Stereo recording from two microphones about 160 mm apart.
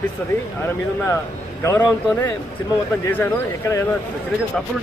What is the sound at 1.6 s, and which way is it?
A man's voice, 20° left (ahead or behind).